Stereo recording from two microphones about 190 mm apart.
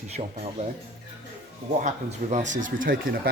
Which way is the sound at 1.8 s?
40° right (ahead or behind).